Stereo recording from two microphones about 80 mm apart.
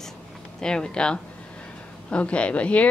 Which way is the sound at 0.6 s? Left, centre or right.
Centre.